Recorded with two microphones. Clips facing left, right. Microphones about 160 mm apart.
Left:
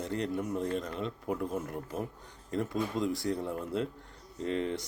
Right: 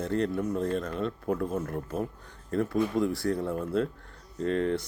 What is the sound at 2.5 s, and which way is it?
Speech, 20° left (ahead or behind).